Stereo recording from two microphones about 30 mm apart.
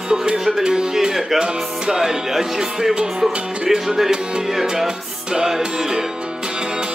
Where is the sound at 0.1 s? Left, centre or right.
Right.